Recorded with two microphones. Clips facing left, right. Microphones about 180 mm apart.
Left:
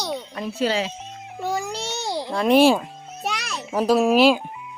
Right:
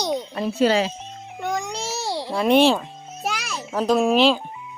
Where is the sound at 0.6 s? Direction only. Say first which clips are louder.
Right 4 dB; 45° right (ahead or behind).